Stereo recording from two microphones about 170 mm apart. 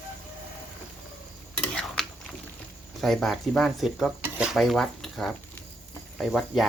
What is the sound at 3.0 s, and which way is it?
Speech, centre (ahead or behind).